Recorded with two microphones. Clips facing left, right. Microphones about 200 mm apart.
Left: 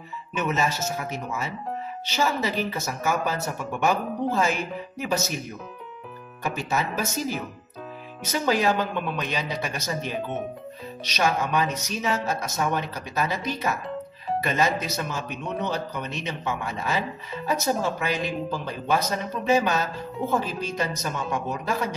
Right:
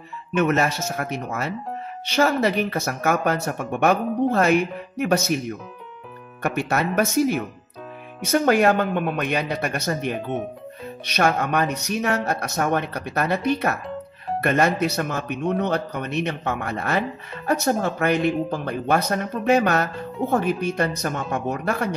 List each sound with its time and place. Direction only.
0.4 s speech: 65° right (ahead or behind)
6.4 s speech: 65° right (ahead or behind)